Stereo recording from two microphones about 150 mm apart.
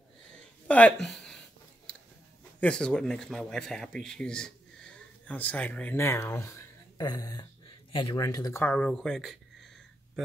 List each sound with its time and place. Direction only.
0.7 s speech: 10° left (ahead or behind)
1.9 s a sound: 5° left (ahead or behind)
2.6 s speech: 5° left (ahead or behind); by 8.2 s 35° left (ahead or behind)
8.2 s speech: 25° left (ahead or behind); by 9.7 s centre (ahead or behind)